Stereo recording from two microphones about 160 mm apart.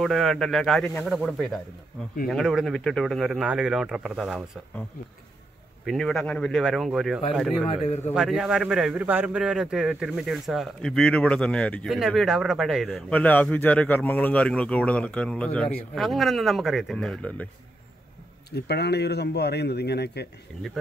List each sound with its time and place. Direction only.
0.0 s speech: centre (ahead or behind)
5.9 s speech: centre (ahead or behind)
7.8 s a man's voice: 45° left (ahead or behind)
8.1 s speech: centre (ahead or behind)
18.5 s speech: 90° left
20.8 s speech: centre (ahead or behind)